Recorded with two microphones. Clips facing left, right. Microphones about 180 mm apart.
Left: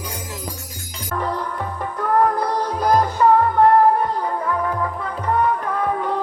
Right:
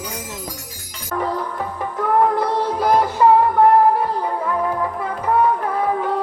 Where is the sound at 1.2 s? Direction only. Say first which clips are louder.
Right 2 dB; centre (ahead or behind).